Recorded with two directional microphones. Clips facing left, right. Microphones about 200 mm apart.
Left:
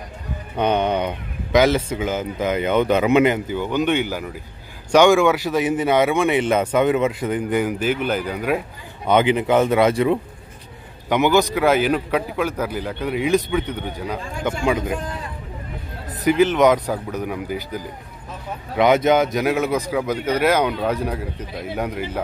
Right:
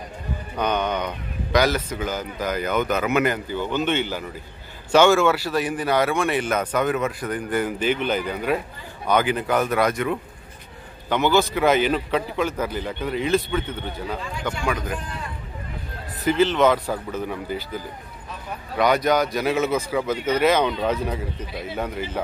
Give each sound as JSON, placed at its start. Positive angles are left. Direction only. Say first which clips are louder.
{"t": 0.6, "sound": "a man's voice", "louder": "left 4 dB", "side_deg": 30}
{"t": 7.8, "sound": "speech", "louder": "left 1 dB", "side_deg": 5}
{"t": 9.0, "sound": "a man's voice", "louder": "left 4 dB", "side_deg": 25}
{"t": 11.1, "sound": "speech", "louder": "left 3 dB", "side_deg": 15}
{"t": 14.6, "sound": "a man's voice", "louder": "left 6 dB", "side_deg": 25}
{"t": 16.3, "sound": "speech", "louder": "left 3 dB", "side_deg": 15}
{"t": 18.8, "sound": "speech", "louder": "left 4 dB", "side_deg": 25}